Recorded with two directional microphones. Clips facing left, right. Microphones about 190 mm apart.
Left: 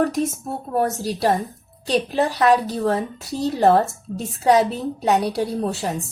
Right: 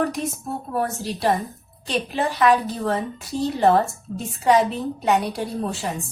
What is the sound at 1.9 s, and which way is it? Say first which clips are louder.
A woman's voice: left 4 dB; 40° left (ahead or behind).